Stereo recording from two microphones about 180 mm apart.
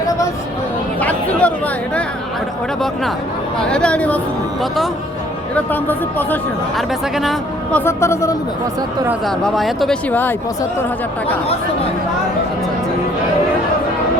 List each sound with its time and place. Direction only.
0.9 s chatter: 10° left (ahead or behind)
3.6 s speech: 5° left (ahead or behind)
5.5 s speech: 10° left (ahead or behind)
6.7 s speech: centre (ahead or behind)
7.9 s speech: 15° left (ahead or behind)
9.2 s speech: centre (ahead or behind)